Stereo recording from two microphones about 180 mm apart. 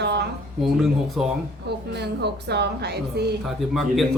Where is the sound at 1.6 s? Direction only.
70° right (ahead or behind).